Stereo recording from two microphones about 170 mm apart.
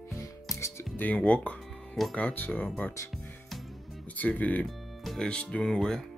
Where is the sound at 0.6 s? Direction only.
15° left (ahead or behind).